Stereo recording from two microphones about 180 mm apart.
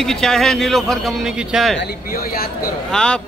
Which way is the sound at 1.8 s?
60° left (ahead or behind).